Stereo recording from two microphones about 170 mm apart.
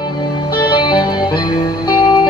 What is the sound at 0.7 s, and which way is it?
Music, 25° left (ahead or behind).